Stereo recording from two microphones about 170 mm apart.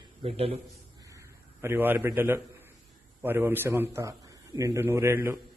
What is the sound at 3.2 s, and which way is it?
A man's voice, 10° right (ahead or behind).